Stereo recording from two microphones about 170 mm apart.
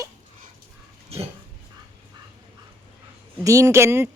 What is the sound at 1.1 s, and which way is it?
Dog, 35° right (ahead or behind).